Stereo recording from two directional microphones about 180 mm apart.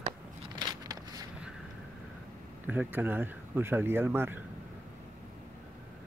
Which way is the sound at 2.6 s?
10° right (ahead or behind).